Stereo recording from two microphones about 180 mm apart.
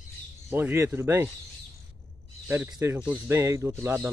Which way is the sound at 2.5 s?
10° right (ahead or behind).